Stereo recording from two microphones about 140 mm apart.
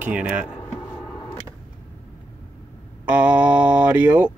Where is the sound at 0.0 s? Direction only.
10° right (ahead or behind).